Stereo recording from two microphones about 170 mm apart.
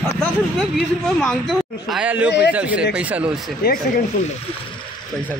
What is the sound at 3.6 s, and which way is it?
Speech, 60° left (ahead or behind).